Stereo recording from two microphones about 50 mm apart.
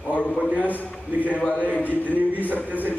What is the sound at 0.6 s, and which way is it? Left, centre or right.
Speech, left.